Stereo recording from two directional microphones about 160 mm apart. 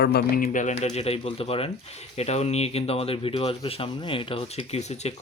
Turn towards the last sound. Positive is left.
turn(degrees=40)  # may be behind; listen again after turning